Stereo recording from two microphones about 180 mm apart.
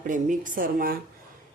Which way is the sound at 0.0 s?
45° right (ahead or behind).